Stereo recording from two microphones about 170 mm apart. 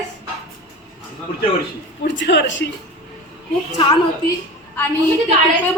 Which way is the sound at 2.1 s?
90° left.